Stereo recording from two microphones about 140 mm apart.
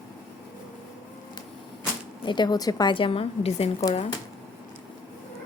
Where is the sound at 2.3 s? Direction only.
30° left (ahead or behind).